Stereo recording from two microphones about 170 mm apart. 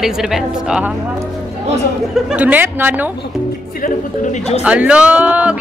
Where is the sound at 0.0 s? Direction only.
5° right (ahead or behind).